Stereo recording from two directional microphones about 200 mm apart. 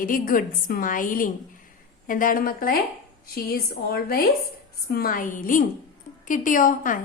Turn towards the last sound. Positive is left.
turn(degrees=40)  # may be behind; listen again after turning